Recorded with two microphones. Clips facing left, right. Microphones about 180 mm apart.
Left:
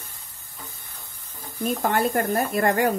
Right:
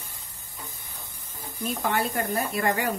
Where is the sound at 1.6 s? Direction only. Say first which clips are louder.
Left 4 dB; 45° left (ahead or behind).